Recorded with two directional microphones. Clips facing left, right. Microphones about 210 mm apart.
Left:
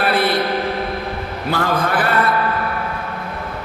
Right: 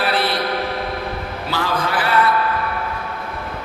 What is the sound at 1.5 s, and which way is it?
Speech, 50° left (ahead or behind).